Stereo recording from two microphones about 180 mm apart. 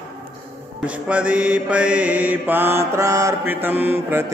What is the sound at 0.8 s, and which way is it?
Mantra, 5° right (ahead or behind).